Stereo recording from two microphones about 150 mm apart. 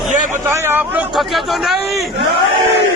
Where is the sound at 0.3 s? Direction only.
15° right (ahead or behind).